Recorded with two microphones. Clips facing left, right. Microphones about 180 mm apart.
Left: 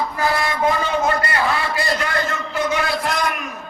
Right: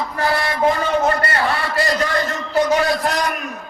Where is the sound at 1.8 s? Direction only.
40° right (ahead or behind).